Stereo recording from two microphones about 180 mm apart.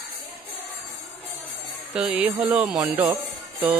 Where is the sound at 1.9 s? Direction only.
5° right (ahead or behind).